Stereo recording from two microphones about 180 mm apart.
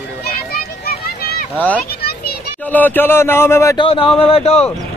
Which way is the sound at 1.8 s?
60° left (ahead or behind).